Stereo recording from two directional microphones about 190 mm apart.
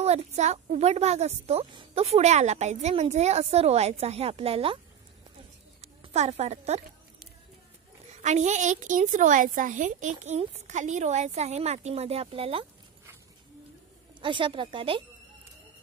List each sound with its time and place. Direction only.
0.0 s speech: 35° right (ahead or behind)
5.8 s a woman's voice: 35° right (ahead or behind)
8.2 s speech: 40° right (ahead or behind)
14.2 s a woman's voice: 25° right (ahead or behind)